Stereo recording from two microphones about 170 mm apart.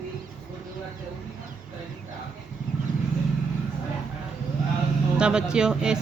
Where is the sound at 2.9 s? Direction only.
50° right (ahead or behind).